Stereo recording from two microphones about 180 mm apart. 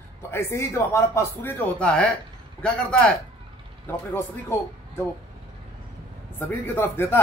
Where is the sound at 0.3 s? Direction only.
15° left (ahead or behind).